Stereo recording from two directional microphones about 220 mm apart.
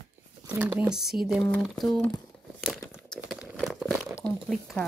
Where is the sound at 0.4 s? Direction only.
10° right (ahead or behind).